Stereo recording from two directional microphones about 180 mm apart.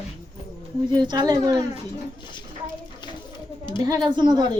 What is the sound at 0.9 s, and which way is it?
Speech, 25° right (ahead or behind).